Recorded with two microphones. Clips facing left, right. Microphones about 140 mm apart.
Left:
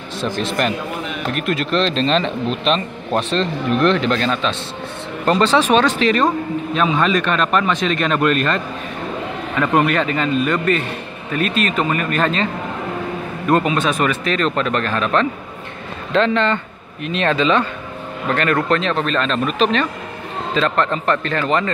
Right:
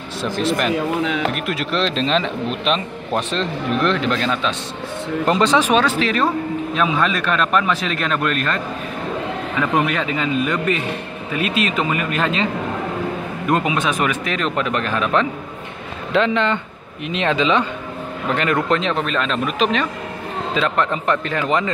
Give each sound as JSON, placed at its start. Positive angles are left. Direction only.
{"t": 0.2, "sound": "speech", "side_deg": -10}
{"t": 1.0, "sound": "speech", "side_deg": -90}
{"t": 1.3, "sound": "a man's voice", "side_deg": -10}
{"t": 9.6, "sound": "speech", "side_deg": -5}
{"t": 13.5, "sound": "speech", "side_deg": -15}